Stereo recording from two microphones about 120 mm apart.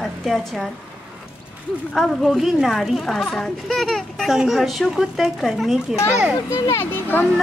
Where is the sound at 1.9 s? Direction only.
Centre (ahead or behind).